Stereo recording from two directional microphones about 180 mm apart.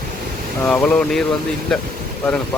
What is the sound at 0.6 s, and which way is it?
Speech, 5° left (ahead or behind).